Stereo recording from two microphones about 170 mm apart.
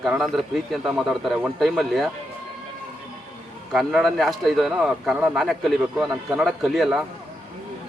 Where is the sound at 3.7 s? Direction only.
Centre (ahead or behind).